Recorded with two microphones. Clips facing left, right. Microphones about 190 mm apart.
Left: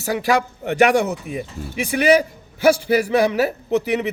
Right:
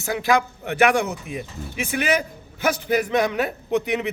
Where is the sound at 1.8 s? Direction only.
10° left (ahead or behind).